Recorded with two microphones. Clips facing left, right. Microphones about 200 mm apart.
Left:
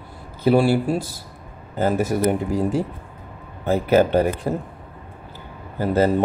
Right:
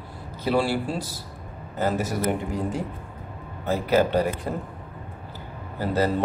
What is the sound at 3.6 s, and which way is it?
Speech, 25° left (ahead or behind).